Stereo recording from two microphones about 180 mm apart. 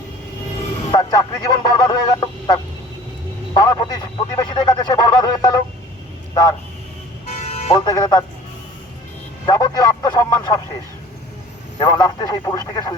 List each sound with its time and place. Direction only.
0.9 s speech: 20° left (ahead or behind)
7.3 s vehicle: 35° left (ahead or behind)
7.8 s speech: 25° left (ahead or behind)
9.5 s speech: 20° left (ahead or behind)
11.8 s speech: 20° left (ahead or behind)